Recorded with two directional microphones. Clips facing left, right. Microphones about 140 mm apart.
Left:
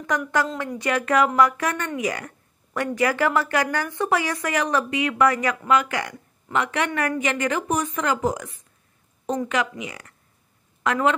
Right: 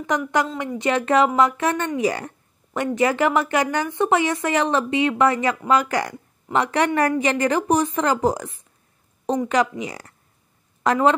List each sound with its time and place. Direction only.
0.1 s a woman's voice: 20° right (ahead or behind)